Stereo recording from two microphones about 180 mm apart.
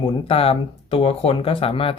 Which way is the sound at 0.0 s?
30° left (ahead or behind).